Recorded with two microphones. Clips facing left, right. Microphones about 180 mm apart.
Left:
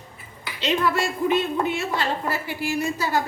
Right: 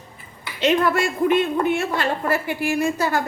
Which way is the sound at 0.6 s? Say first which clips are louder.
Right 4 dB; 55° right (ahead or behind).